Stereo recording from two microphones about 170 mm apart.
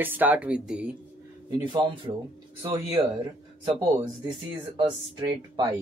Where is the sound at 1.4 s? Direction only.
30° right (ahead or behind).